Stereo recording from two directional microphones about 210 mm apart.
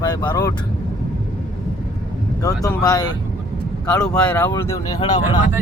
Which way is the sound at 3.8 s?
5° left (ahead or behind).